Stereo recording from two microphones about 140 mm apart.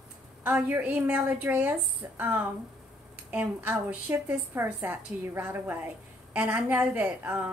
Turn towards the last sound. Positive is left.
turn(degrees=-10)  # may be behind; listen again after turning